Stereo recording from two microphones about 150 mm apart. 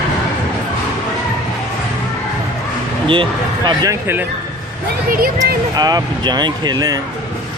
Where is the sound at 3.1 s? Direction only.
35° right (ahead or behind).